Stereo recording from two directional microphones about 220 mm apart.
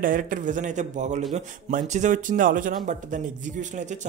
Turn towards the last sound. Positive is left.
turn(degrees=-35)  # may be behind; listen again after turning